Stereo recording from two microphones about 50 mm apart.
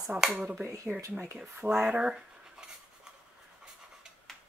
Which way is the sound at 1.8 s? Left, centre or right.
Centre.